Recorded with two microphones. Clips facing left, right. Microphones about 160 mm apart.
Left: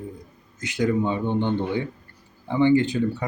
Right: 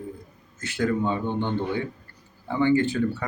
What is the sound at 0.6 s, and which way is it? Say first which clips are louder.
Speech: left 2 dB; 15° left (ahead or behind).